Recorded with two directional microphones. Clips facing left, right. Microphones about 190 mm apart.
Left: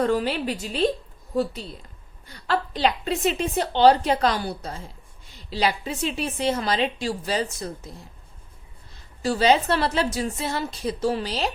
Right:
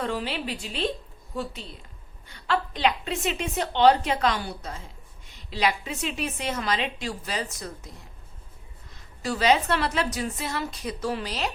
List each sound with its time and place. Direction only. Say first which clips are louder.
0.0 s a woman's voice: left 7 dB; 40° left (ahead or behind)
2.2 s a woman's voice: left 2 dB; 35° left (ahead or behind)
8.9 s a woman's voice: left 5 dB; 30° left (ahead or behind)